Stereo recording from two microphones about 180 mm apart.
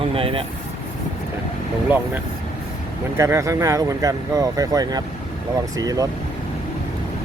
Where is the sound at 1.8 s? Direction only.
10° right (ahead or behind).